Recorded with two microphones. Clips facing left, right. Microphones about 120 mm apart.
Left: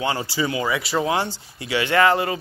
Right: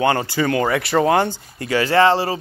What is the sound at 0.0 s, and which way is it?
Speech, 60° right (ahead or behind).